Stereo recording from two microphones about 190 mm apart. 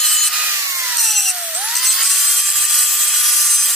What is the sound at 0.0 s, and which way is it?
Tools, centre (ahead or behind).